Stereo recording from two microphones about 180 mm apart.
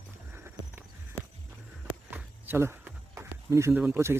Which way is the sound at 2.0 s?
10° right (ahead or behind).